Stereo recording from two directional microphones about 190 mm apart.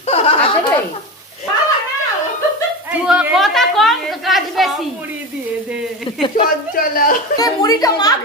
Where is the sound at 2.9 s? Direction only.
5° right (ahead or behind).